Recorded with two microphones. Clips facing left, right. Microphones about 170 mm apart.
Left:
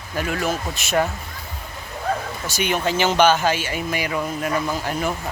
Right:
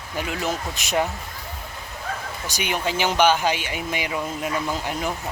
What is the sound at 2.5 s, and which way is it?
Speech, 10° right (ahead or behind).